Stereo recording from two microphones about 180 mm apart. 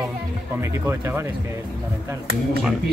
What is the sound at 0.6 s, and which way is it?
Speech, 15° right (ahead or behind).